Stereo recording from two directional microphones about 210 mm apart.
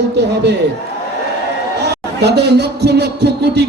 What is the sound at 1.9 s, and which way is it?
A man's voice, 50° right (ahead or behind).